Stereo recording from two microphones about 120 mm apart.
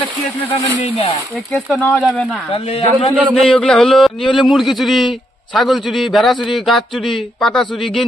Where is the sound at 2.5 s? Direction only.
55° left (ahead or behind).